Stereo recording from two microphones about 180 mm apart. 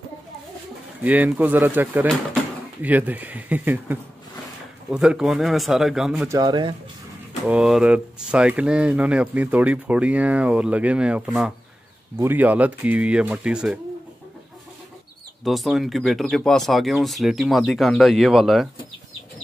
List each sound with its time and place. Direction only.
1.0 s speech: 10° right (ahead or behind)
6.2 s speech: 20° right (ahead or behind)
7.4 s speech: 5° right (ahead or behind)
15.4 s speech: centre (ahead or behind)